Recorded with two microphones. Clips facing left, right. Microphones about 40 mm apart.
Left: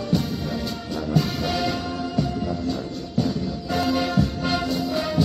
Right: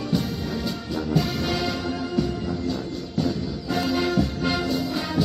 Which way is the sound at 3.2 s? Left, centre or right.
Centre.